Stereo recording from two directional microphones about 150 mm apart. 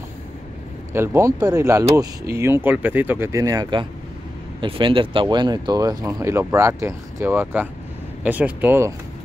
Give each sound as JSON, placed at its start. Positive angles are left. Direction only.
{"t": 0.9, "sound": "speech", "side_deg": -15}
{"t": 4.6, "sound": "speech", "side_deg": -35}